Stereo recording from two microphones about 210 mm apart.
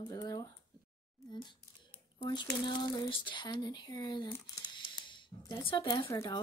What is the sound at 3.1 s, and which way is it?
Speech, 20° left (ahead or behind).